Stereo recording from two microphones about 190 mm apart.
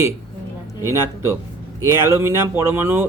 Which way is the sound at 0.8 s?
15° right (ahead or behind).